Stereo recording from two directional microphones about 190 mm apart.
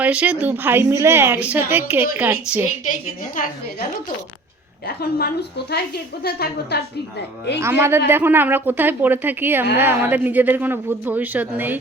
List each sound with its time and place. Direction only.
0.0 s a woman's voice: 5° right (ahead or behind)
4.9 s a woman's voice: 55° left (ahead or behind)
7.6 s a woman's voice: 15° right (ahead or behind)